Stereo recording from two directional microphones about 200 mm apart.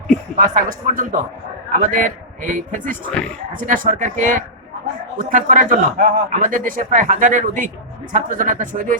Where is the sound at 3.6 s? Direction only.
40° right (ahead or behind).